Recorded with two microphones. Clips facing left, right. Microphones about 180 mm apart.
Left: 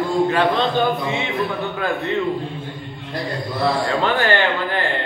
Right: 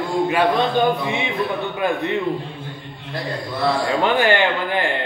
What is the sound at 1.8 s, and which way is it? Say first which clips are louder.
Speech: right 3 dB; 15° right (ahead or behind).